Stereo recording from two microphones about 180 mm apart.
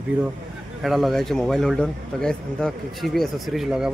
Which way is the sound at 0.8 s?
Centre (ahead or behind).